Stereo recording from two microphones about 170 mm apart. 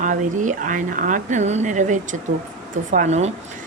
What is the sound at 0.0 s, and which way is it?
A woman's voice, 50° right (ahead or behind).